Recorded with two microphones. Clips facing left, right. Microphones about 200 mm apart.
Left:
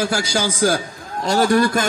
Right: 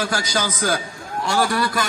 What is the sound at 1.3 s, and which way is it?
Speech, 40° left (ahead or behind).